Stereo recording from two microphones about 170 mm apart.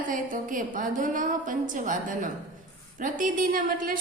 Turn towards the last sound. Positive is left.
turn(degrees=-55)  # may be behind; listen again after turning